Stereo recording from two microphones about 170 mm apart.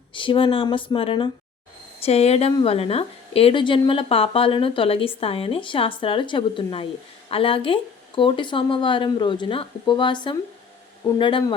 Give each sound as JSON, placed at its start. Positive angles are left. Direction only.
{"t": 0.1, "sound": "a woman's voice", "side_deg": 30}